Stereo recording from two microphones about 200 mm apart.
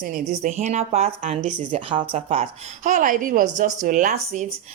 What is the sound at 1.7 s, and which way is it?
A woman's voice, 25° right (ahead or behind).